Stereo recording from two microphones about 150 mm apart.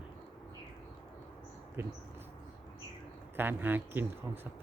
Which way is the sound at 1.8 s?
15° right (ahead or behind).